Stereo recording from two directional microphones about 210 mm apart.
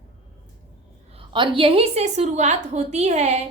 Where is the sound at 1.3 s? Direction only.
25° right (ahead or behind).